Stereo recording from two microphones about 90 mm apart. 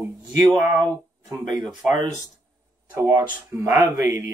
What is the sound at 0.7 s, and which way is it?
Speech, 40° right (ahead or behind).